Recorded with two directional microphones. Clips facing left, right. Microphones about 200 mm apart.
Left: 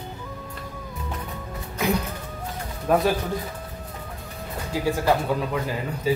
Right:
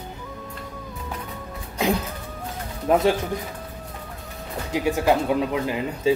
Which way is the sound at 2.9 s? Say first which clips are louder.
Right 1 dB; 20° right (ahead or behind).